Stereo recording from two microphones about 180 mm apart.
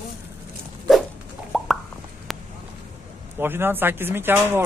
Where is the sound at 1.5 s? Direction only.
Centre (ahead or behind).